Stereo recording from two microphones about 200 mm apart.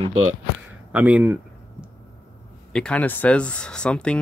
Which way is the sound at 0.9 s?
10° right (ahead or behind).